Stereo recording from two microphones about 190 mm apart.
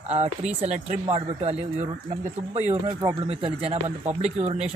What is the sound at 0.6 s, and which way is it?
Speech, 40° right (ahead or behind).